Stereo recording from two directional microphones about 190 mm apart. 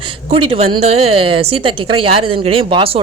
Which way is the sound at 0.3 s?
30° right (ahead or behind).